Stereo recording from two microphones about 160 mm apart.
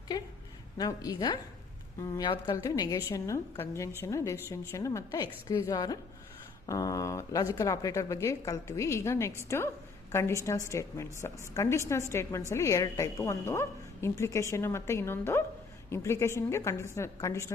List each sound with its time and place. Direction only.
0.1 s a woman's voice: 25° left (ahead or behind)